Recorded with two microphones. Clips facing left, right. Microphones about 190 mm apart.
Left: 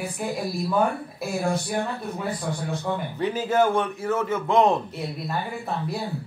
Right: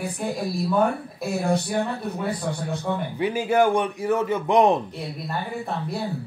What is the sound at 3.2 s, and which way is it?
A man's voice, 10° right (ahead or behind).